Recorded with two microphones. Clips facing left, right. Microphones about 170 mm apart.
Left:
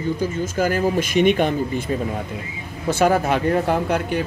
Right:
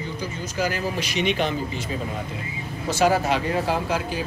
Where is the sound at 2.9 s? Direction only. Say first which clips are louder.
Left 3 dB; 55° left (ahead or behind).